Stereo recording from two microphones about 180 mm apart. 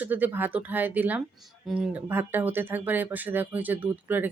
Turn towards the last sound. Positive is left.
turn(degrees=-10)  # may be behind; listen again after turning